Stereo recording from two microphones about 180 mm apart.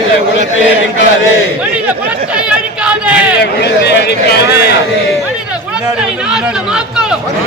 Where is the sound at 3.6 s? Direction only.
65° left (ahead or behind).